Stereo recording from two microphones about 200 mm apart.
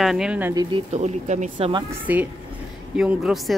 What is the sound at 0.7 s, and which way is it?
Speech, 35° right (ahead or behind).